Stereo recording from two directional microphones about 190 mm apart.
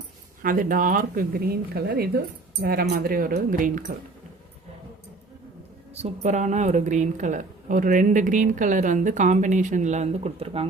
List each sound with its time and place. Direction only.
0.4 s speech: 45° right (ahead or behind)
5.9 s a woman's voice: 35° right (ahead or behind)